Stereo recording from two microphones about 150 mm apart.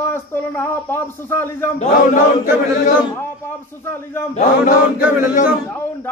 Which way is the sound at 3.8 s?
15° left (ahead or behind).